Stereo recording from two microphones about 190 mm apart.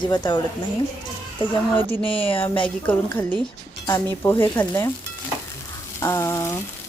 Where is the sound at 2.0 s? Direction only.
30° left (ahead or behind).